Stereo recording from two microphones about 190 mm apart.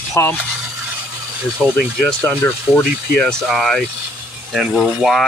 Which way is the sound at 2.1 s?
10° left (ahead or behind).